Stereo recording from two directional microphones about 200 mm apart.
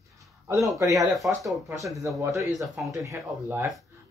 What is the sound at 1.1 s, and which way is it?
Speech, centre (ahead or behind).